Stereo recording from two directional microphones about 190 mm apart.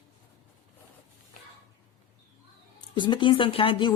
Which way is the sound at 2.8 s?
25° left (ahead or behind).